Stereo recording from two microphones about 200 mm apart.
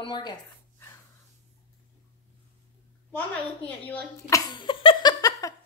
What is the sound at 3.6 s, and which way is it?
Speech, 10° left (ahead or behind).